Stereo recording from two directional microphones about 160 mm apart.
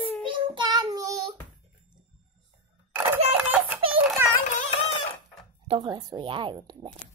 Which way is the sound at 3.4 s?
10° right (ahead or behind).